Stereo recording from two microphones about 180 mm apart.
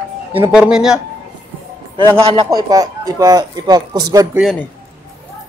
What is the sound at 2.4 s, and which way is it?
Speech, 20° right (ahead or behind).